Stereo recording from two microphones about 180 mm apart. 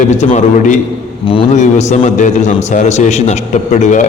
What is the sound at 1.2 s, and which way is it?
Speech, 30° left (ahead or behind).